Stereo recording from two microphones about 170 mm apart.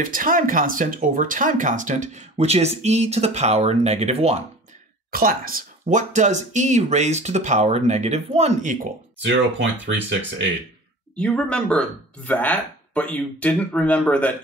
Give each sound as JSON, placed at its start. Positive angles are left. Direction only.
{"t": 0.0, "sound": "speech", "side_deg": -55}
{"t": 5.1, "sound": "speech", "side_deg": -55}
{"t": 9.2, "sound": "speech", "side_deg": -90}
{"t": 11.1, "sound": "speech", "side_deg": 5}